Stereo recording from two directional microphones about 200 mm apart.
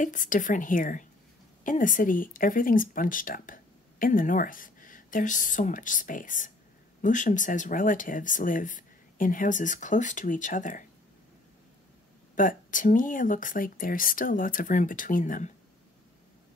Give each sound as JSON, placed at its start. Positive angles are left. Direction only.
{"t": 0.0, "sound": "speech", "side_deg": 40}
{"t": 12.4, "sound": "speech", "side_deg": 40}